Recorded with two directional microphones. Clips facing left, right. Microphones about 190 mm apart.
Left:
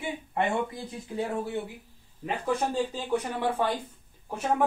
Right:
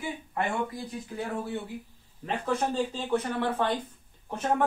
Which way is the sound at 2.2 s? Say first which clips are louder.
Even; 10° left (ahead or behind).